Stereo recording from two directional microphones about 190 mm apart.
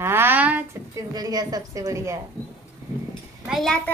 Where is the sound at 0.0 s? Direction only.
10° right (ahead or behind).